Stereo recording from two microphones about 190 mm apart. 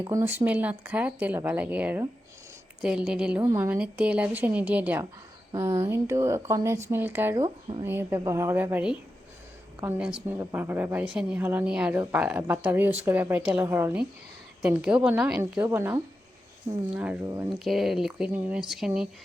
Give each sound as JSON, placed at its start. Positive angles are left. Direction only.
{"t": 0.0, "sound": "a woman's voice", "side_deg": -10}
{"t": 7.3, "sound": "speech", "side_deg": -25}
{"t": 7.9, "sound": "a woman's voice", "side_deg": -10}
{"t": 10.2, "sound": "a woman's voice", "side_deg": -10}